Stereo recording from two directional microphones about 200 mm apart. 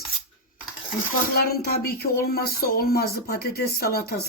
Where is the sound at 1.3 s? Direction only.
50° left (ahead or behind).